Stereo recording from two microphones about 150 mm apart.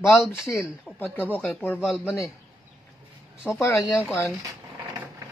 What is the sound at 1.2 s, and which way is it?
Speech, 10° right (ahead or behind).